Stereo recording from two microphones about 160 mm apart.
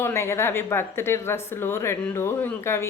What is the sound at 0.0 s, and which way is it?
A woman's voice, 15° left (ahead or behind).